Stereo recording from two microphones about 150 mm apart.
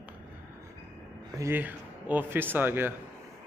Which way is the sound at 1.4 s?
15° right (ahead or behind).